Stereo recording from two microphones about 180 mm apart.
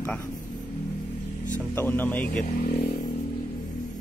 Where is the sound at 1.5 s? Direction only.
10° left (ahead or behind).